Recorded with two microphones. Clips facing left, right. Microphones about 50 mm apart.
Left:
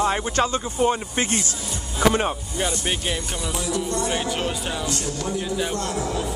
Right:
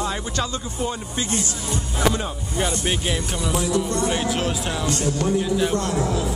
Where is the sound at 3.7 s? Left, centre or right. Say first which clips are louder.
Right 1 dB; right.